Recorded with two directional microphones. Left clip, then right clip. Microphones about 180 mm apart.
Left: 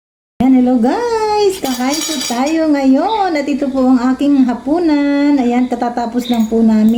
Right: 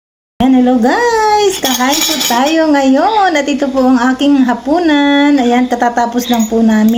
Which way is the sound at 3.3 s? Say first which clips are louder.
Right 4 dB; 40° right (ahead or behind).